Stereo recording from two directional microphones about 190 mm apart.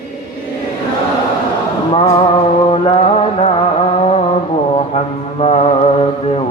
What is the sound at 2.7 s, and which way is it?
Mantra, 30° left (ahead or behind).